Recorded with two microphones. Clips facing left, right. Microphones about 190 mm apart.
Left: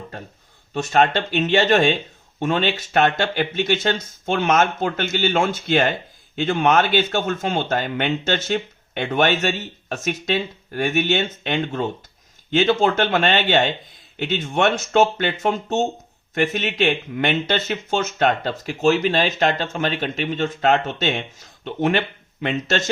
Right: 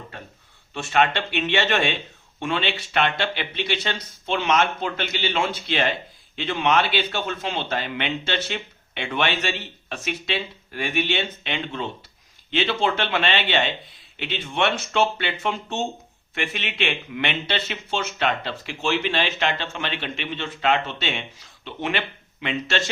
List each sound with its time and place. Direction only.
0.7 s speech: 40° left (ahead or behind)